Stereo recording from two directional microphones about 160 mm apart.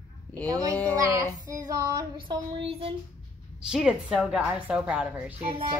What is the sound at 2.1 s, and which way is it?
Speech, 30° right (ahead or behind).